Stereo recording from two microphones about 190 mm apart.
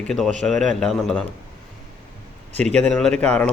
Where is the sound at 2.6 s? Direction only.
5° left (ahead or behind).